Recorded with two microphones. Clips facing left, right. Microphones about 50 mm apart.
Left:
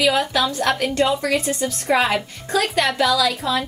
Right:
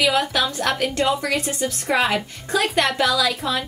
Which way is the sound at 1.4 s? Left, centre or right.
Right.